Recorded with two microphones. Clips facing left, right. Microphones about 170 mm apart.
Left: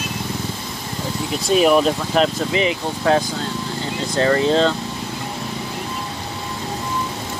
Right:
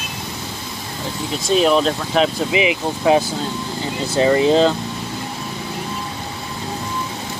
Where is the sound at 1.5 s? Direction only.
5° left (ahead or behind); by 4.7 s 10° right (ahead or behind).